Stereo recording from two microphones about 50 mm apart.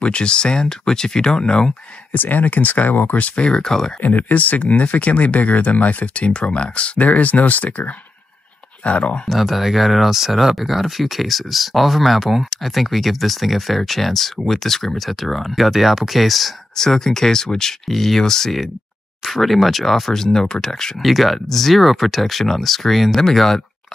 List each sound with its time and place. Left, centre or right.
0.0 s speech: left
2.1 s speech: left
3.3 s speech: centre
4.0 s speech: left
9.3 s speech: centre
16.7 s speech: centre
21.0 s speech: centre